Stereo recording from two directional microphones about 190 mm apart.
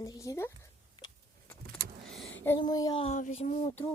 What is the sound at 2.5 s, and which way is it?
Speech, 20° left (ahead or behind).